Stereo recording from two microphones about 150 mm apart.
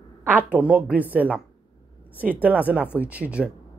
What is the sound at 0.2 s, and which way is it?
A man's voice, 15° right (ahead or behind).